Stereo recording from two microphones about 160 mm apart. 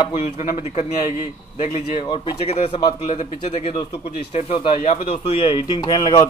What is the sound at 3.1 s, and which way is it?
Speech, 45° left (ahead or behind).